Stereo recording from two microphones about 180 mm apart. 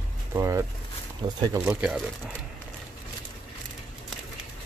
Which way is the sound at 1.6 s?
5° right (ahead or behind).